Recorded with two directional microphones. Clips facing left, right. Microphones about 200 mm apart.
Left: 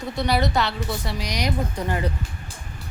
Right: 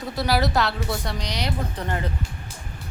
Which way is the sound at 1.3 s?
10° left (ahead or behind).